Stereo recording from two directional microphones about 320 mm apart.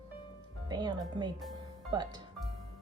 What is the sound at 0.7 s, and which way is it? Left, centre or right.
Speech, centre.